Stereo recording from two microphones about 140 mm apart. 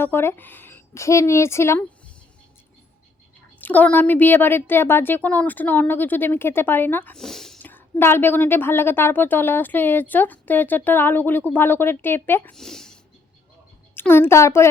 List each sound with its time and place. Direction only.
0.0 s speech: 15° left (ahead or behind)
3.6 s a woman's voice: 10° left (ahead or behind)
7.2 s speech: 5° left (ahead or behind)
7.6 s a woman's voice: 15° left (ahead or behind)
12.5 s speech: 5° left (ahead or behind)
13.9 s a child's voice: 15° left (ahead or behind)